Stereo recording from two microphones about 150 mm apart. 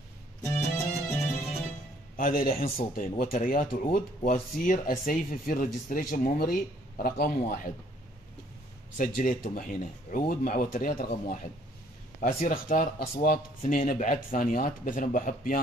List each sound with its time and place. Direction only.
0.4 s music: 15° left (ahead or behind)
1.2 s music: centre (ahead or behind)
2.1 s a man's voice: 70° left (ahead or behind)
8.9 s speech: 65° left (ahead or behind)
13.7 s speech: 60° left (ahead or behind)